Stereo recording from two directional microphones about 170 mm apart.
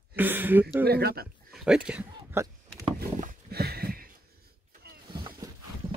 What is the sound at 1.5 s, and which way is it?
Speech, 5° right (ahead or behind).